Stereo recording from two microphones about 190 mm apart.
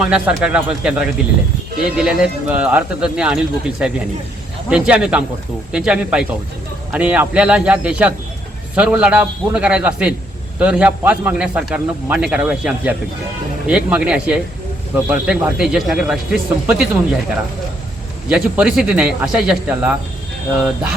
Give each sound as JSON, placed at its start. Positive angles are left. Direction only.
{"t": 0.0, "sound": "a man's voice", "side_deg": -5}
{"t": 18.3, "sound": "speech", "side_deg": -5}